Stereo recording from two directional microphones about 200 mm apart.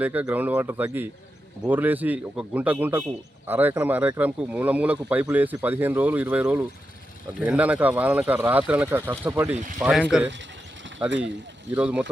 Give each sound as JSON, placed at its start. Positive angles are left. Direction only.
{"t": 0.0, "sound": "speech", "side_deg": -10}
{"t": 11.7, "sound": "speech", "side_deg": -5}